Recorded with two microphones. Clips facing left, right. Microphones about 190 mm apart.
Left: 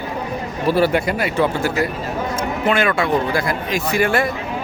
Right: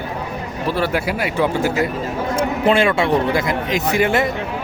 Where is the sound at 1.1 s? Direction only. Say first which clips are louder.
Even; 10° right (ahead or behind).